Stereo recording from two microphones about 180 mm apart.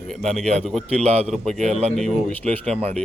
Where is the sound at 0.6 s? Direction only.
5° left (ahead or behind).